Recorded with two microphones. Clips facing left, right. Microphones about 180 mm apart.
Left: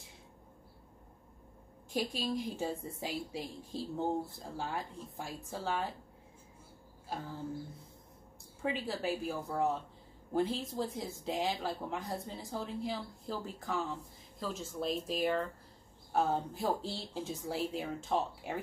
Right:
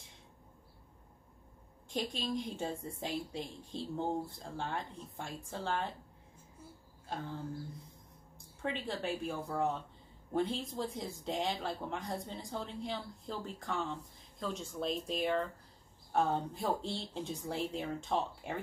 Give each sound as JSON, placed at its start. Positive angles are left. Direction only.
{"t": 1.9, "sound": "a woman's voice", "side_deg": 5}
{"t": 8.6, "sound": "a woman's voice", "side_deg": 5}